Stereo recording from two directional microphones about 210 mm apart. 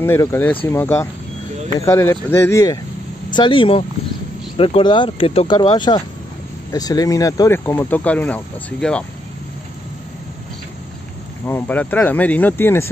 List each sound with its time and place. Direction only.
0.0 s speech: 10° left (ahead or behind)
11.4 s speech: 10° left (ahead or behind)